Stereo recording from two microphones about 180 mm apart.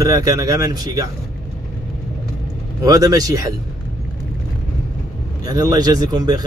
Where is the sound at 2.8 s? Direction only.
20° right (ahead or behind).